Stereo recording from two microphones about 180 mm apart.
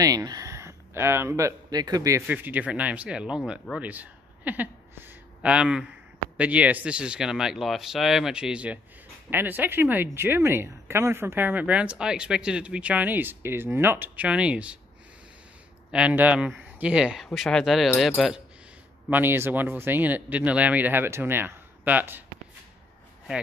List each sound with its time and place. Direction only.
0.0 s speech: 20° right (ahead or behind)
2.2 s speech: 10° right (ahead or behind)
3.8 s a sound: 10° right (ahead or behind)
6.3 s speech: 5° right (ahead or behind)
15.9 s speech: 5° right (ahead or behind)
19.0 s speech: 10° right (ahead or behind)